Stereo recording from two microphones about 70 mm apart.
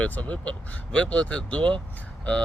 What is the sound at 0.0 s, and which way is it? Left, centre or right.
Speech, left.